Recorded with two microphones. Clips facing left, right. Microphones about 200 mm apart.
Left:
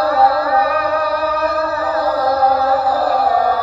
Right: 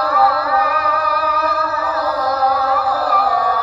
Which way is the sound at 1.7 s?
30° left (ahead or behind).